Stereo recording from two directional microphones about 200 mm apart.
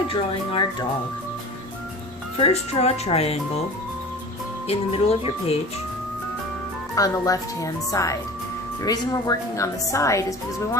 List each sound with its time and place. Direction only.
0.1 s speech: 25° left (ahead or behind)
2.4 s speech: 30° left (ahead or behind)
4.7 s speech: 30° left (ahead or behind)
6.9 s speech: 15° left (ahead or behind)